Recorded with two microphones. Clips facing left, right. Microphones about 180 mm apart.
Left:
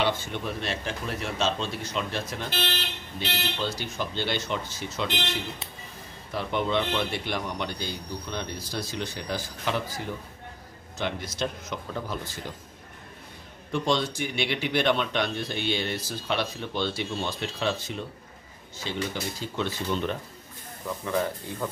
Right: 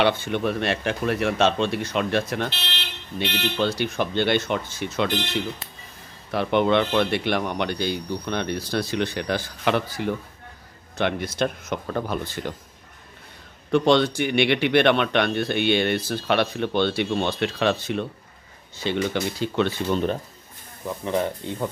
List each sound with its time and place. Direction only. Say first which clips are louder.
0.0 s speech: right 6 dB; 65° right (ahead or behind)
3.5 s speech: right 8 dB; 65° right (ahead or behind)
6.3 s speech: right 7 dB; 65° right (ahead or behind)
13.7 s speech: right 8 dB; 65° right (ahead or behind)
19.9 s speech: right 5 dB; 40° right (ahead or behind)
21.0 s speech: right 4 dB; 20° right (ahead or behind)